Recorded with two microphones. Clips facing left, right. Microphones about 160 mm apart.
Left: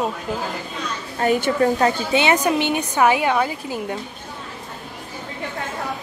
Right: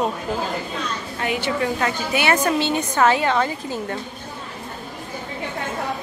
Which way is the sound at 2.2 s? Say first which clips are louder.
Even; 15° left (ahead or behind).